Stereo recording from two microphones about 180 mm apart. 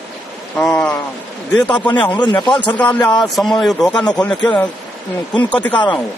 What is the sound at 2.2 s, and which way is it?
Speech, 25° left (ahead or behind).